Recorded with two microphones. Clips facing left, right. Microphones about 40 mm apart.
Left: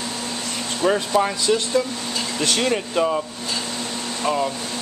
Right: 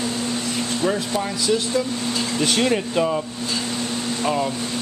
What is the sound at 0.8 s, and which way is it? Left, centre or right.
Speech, centre.